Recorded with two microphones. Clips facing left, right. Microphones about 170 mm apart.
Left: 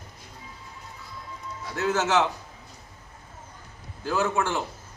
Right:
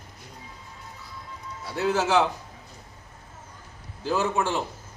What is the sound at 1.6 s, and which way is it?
Speech, 10° right (ahead or behind).